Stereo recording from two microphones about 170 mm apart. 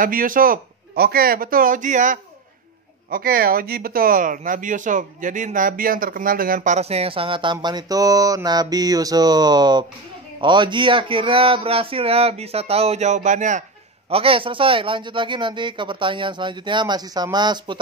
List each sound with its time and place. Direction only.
0.0 s a man's voice: 55° right (ahead or behind)
3.1 s speech: 60° right (ahead or behind)
14.1 s speech: 35° right (ahead or behind)